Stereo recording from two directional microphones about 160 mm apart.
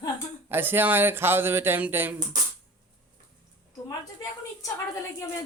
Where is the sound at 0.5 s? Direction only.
15° right (ahead or behind).